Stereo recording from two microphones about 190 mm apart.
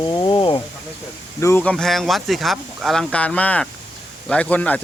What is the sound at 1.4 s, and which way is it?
Speech, 10° left (ahead or behind).